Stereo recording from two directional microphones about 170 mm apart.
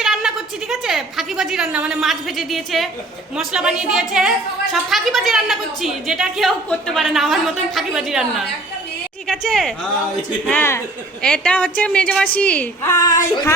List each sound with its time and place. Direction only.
0.0 s a woman's voice: 5° right (ahead or behind)
13.1 s speech: 20° left (ahead or behind)